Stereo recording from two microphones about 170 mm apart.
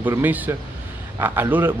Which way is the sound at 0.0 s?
10° right (ahead or behind).